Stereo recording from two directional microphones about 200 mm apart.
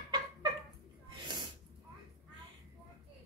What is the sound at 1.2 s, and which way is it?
Snort, 20° right (ahead or behind).